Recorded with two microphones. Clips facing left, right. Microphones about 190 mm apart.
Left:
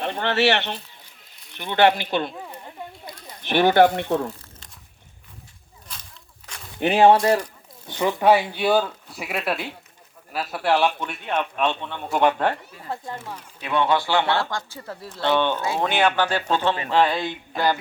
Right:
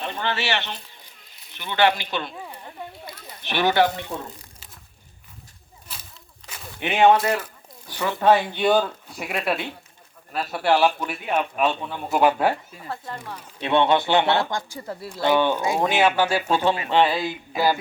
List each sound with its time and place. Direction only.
0.0 s speech: 70° left (ahead or behind)
1.5 s speech: 55° left (ahead or behind)
3.4 s speech: 50° left (ahead or behind)
5.9 s a sound: 5° right (ahead or behind)
6.7 s speech: 35° left (ahead or behind)
7.9 s speech: 25° left (ahead or behind)
8.2 s a man's voice: 10° left (ahead or behind); by 12.9 s 10° right (ahead or behind)
13.1 s speech: 5° left (ahead or behind)
13.6 s a man's voice: 30° right (ahead or behind); by 17.7 s 5° right (ahead or behind)